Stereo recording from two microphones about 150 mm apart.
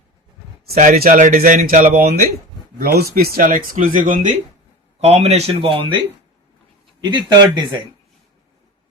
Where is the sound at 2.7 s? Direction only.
85° right.